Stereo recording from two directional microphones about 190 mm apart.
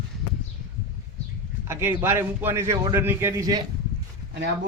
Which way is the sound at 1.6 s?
15° right (ahead or behind).